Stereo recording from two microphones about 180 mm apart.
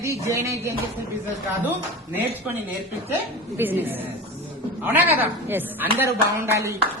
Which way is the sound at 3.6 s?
10° right (ahead or behind).